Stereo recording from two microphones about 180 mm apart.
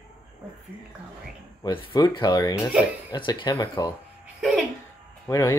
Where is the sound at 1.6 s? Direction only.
30° left (ahead or behind).